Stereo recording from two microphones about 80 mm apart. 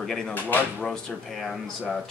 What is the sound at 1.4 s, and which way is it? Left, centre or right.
Speech, centre.